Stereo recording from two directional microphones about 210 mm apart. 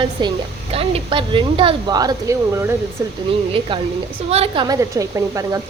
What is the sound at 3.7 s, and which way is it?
A woman's voice, 25° right (ahead or behind).